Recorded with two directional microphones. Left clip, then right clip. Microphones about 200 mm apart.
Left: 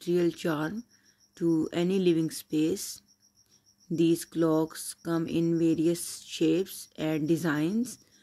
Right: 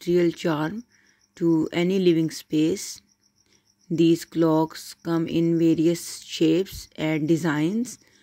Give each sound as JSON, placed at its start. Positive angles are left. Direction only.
{"t": 0.0, "sound": "speech", "side_deg": -15}